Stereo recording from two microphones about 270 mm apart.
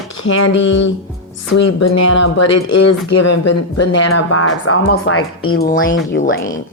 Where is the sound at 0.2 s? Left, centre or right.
Left.